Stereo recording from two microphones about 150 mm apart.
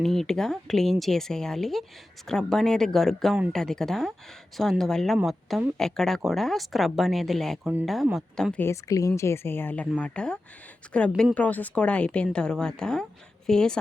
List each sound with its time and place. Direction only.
0.0 s speech: centre (ahead or behind)
8.5 s speech: 15° left (ahead or behind)